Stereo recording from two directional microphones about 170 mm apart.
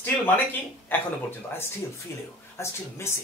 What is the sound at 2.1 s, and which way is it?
Speech, 15° left (ahead or behind).